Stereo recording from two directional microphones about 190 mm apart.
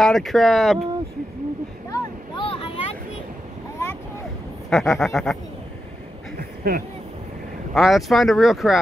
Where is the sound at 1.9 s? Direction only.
25° left (ahead or behind).